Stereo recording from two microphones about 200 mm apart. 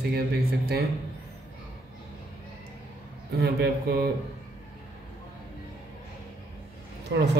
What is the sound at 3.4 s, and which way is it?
Speech, 55° right (ahead or behind).